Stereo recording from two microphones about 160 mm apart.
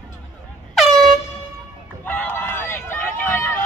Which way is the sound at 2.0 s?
10° left (ahead or behind).